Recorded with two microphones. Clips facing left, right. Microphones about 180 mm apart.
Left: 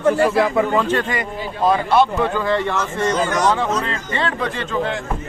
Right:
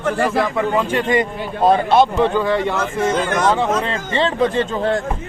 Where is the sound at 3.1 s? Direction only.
55° right (ahead or behind).